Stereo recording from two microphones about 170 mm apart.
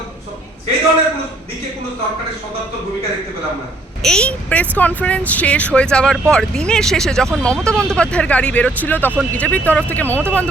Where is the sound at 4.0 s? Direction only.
5° left (ahead or behind).